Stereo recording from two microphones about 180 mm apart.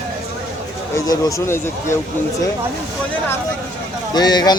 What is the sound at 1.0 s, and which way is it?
Speech, 15° left (ahead or behind).